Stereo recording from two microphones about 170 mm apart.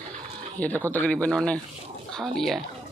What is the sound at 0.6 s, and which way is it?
Speech, 10° left (ahead or behind).